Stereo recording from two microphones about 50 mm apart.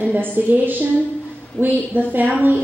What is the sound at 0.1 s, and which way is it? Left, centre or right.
A woman's voice, right.